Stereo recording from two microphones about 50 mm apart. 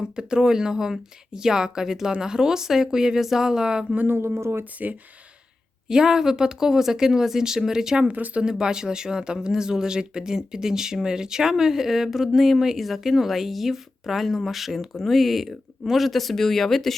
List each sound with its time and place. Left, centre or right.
0.0 s speech: centre
3.9 s speech: right
4.4 s speech: right
5.9 s speech: centre
8.0 s speech: right
8.4 s speech: centre